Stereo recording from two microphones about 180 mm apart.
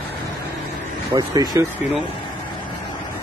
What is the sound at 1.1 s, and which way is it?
Speech, 20° right (ahead or behind).